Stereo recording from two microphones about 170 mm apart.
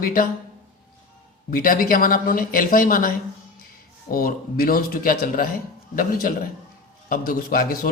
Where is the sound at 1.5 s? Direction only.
60° left (ahead or behind).